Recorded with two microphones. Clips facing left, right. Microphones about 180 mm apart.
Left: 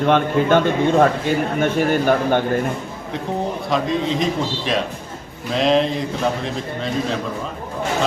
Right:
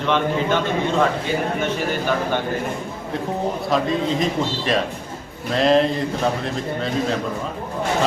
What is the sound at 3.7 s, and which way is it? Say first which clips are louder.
A man's voice: even; centre (ahead or behind).